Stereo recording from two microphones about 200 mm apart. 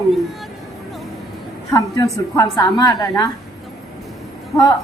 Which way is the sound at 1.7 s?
15° left (ahead or behind).